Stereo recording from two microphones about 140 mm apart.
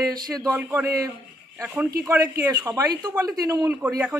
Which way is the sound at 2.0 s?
20° right (ahead or behind).